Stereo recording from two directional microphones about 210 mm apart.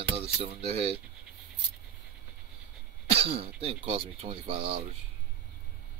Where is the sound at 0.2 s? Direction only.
30° right (ahead or behind).